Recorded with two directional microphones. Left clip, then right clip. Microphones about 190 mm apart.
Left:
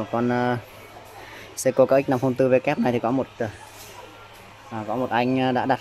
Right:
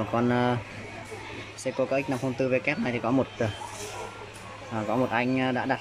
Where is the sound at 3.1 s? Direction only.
Centre (ahead or behind).